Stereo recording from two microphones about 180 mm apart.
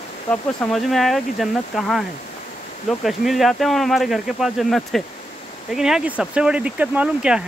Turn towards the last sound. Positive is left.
turn(degrees=-5)  # may be behind; listen again after turning